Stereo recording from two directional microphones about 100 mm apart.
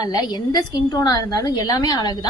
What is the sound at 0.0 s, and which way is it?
A woman's voice, 40° left (ahead or behind).